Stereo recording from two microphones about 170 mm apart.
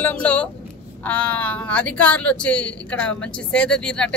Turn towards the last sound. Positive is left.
turn(degrees=5)  # may be behind; listen again after turning